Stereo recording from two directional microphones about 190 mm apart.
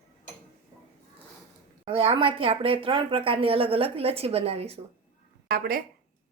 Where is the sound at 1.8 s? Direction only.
30° right (ahead or behind).